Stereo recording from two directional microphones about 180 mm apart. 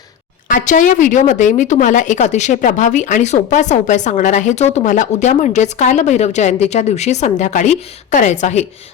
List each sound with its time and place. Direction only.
0.4 s a woman's voice: 45° left (ahead or behind)